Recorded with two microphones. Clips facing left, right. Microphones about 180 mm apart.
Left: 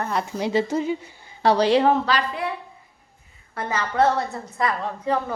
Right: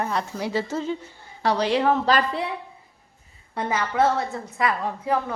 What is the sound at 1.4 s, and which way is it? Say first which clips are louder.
Speech: left 4 dB; 30° left (ahead or behind).